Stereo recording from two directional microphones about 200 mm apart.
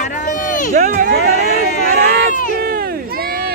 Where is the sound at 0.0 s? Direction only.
40° left (ahead or behind).